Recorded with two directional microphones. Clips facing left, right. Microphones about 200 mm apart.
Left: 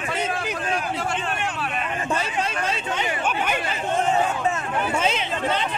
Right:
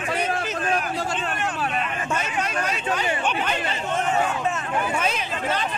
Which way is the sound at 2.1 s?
30° left (ahead or behind).